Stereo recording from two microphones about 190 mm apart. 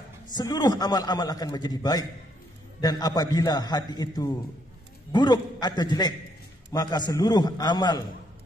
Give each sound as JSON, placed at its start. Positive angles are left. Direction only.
{"t": 0.3, "sound": "a man's voice", "side_deg": 20}